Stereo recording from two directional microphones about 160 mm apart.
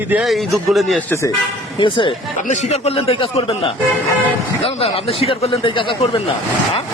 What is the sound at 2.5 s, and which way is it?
A man's voice, 45° left (ahead or behind).